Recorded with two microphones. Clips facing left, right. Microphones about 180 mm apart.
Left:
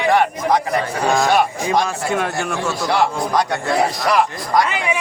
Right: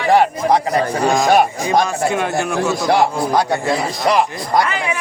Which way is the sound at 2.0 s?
Centre (ahead or behind).